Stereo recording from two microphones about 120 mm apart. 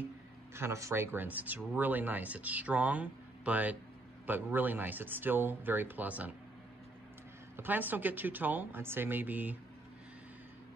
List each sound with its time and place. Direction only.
0.6 s speech: 25° right (ahead or behind)
7.5 s speech: 15° right (ahead or behind)